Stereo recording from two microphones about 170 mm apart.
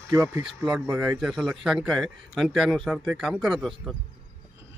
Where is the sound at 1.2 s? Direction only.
Centre (ahead or behind).